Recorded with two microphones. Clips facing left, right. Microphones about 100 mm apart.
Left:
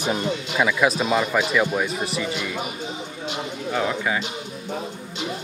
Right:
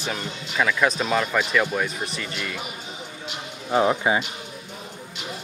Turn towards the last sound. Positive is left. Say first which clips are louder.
# right 4 dB
turn(degrees=-25)  # may be behind; listen again after turning